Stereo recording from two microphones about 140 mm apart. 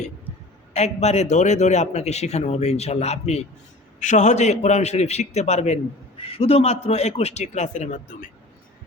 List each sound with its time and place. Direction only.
0.7 s a man's voice: 50° left (ahead or behind)